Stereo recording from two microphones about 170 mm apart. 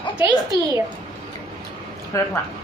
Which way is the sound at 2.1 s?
15° left (ahead or behind).